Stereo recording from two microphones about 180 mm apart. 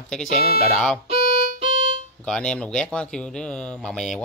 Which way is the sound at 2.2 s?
5° left (ahead or behind).